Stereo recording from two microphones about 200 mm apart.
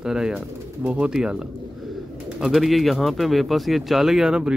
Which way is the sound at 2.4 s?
Centre (ahead or behind).